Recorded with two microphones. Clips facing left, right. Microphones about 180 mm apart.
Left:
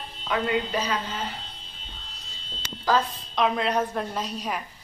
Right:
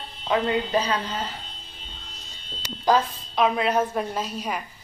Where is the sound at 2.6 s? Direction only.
15° right (ahead or behind).